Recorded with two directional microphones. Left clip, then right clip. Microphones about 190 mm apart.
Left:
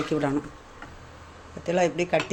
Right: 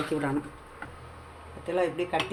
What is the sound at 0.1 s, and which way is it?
Speech, 25° left (ahead or behind).